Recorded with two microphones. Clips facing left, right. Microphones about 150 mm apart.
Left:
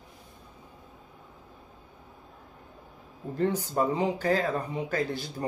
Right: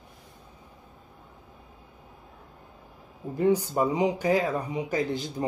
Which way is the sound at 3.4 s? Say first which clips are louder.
Right 3 dB; 10° right (ahead or behind).